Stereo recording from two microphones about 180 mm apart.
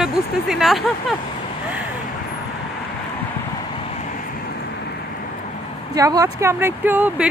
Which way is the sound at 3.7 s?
35° left (ahead or behind).